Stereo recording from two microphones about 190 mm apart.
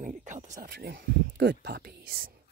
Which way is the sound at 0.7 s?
55° right (ahead or behind).